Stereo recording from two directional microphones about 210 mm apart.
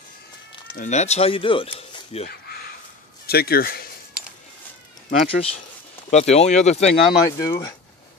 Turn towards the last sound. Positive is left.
turn(degrees=15)  # may be behind; listen again after turning